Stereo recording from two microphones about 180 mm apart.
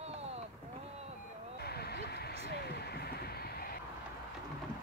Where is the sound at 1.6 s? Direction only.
60° left (ahead or behind).